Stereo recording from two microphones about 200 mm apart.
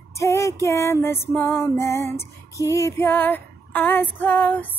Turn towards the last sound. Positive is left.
turn(degrees=10)  # may be behind; listen again after turning